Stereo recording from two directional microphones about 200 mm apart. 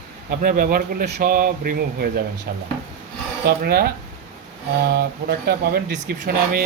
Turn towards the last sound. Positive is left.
turn(degrees=-55)  # may be behind; listen again after turning